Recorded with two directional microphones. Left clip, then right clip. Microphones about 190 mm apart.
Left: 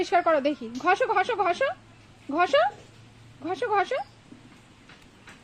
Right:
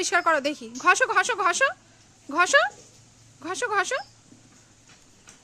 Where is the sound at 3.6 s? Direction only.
40° right (ahead or behind).